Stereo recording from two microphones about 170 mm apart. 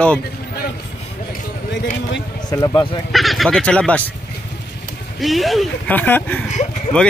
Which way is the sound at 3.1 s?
Centre (ahead or behind).